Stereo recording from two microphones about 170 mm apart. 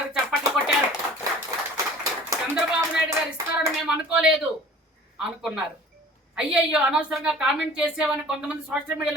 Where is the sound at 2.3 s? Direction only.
10° right (ahead or behind).